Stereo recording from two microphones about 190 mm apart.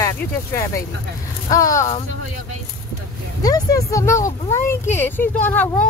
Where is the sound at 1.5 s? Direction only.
15° left (ahead or behind).